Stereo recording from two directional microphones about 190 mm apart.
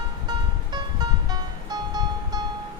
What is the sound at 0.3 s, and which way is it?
Music, 20° right (ahead or behind).